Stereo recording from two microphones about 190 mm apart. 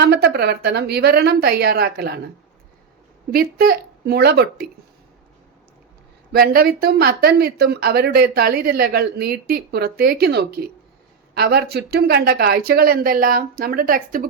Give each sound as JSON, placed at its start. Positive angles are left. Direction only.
{"t": 0.0, "sound": "speech", "side_deg": -60}
{"t": 3.3, "sound": "speech", "side_deg": -50}
{"t": 6.3, "sound": "speech", "side_deg": -50}